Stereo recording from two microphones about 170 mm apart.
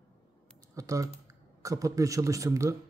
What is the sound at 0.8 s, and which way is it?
Speech, 20° right (ahead or behind).